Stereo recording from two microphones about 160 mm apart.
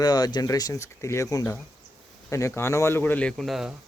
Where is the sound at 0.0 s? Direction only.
25° left (ahead or behind).